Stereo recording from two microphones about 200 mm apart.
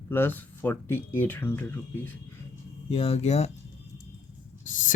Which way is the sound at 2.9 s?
30° left (ahead or behind).